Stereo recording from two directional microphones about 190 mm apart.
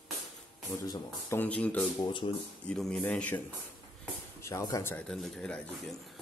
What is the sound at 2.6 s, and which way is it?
Speech, centre (ahead or behind).